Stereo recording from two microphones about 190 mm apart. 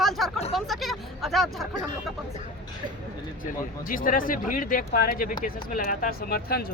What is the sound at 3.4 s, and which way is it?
Speech, 45° left (ahead or behind).